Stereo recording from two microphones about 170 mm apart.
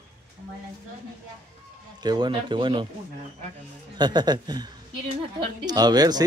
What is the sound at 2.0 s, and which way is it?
Speech, 25° right (ahead or behind).